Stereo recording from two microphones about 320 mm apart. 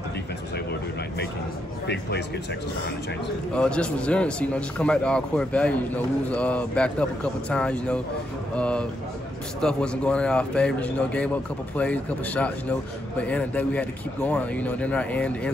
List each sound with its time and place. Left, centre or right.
1.9 s speech: left
3.5 s a man's voice: centre